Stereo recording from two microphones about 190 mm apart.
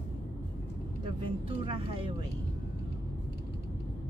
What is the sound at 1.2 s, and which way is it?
Speech, 25° right (ahead or behind).